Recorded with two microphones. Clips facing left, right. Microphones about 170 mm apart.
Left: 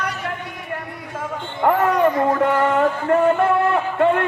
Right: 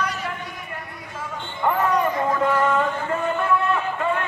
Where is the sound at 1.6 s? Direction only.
65° left (ahead or behind).